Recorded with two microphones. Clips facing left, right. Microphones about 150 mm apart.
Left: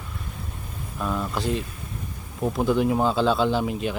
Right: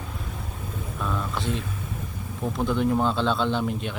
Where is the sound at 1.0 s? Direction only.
5° left (ahead or behind).